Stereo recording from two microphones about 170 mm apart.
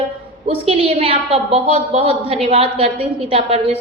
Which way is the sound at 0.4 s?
35° right (ahead or behind).